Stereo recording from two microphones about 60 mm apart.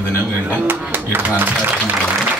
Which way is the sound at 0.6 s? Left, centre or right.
Right.